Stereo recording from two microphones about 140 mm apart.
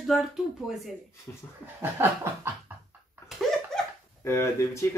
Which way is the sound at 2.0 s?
15° right (ahead or behind).